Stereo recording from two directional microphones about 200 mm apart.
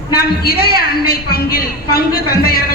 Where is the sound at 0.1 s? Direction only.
50° left (ahead or behind).